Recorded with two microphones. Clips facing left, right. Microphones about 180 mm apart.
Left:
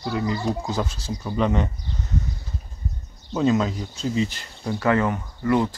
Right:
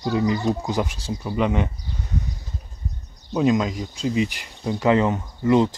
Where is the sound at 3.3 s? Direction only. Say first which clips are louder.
Right 1 dB; 15° right (ahead or behind).